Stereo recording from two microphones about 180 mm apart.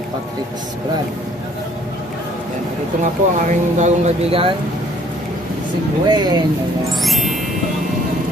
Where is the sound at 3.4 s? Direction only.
35° right (ahead or behind).